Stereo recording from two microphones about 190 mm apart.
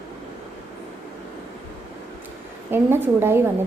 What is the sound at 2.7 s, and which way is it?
Speech, 10° right (ahead or behind).